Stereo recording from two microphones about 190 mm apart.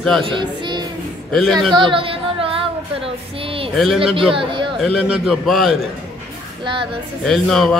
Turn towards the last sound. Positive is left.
turn(degrees=0)  # may be behind; listen again after turning